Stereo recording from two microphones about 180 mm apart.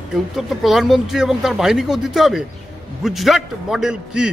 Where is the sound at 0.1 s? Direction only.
Centre (ahead or behind).